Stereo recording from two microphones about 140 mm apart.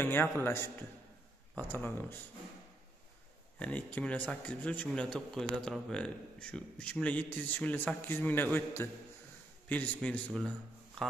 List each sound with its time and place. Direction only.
0.0 s a man's voice: 15° left (ahead or behind)
3.5 s a man's voice: 10° left (ahead or behind)
11.0 s a sound: 5° left (ahead or behind)